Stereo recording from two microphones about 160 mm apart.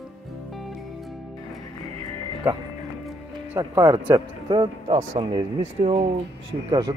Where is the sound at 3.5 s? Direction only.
20° right (ahead or behind); by 6.0 s 40° right (ahead or behind).